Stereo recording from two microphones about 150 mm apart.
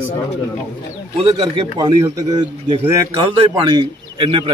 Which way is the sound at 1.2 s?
30° right (ahead or behind).